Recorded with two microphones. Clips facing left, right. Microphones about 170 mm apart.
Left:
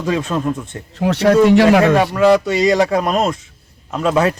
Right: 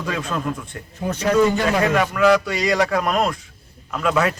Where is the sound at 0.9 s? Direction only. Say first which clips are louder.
Left 8 dB; 75° left (ahead or behind).